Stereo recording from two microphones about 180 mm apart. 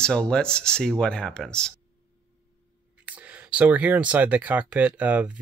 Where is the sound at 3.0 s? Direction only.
10° right (ahead or behind).